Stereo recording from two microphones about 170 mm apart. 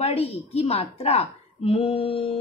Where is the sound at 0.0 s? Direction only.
35° left (ahead or behind).